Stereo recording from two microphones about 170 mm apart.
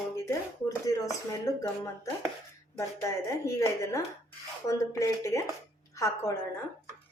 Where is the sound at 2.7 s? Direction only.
15° left (ahead or behind).